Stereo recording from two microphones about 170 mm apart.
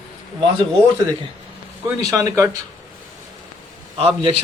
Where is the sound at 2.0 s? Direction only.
20° right (ahead or behind).